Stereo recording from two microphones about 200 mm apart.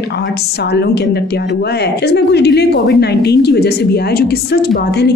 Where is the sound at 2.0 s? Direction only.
55° left (ahead or behind).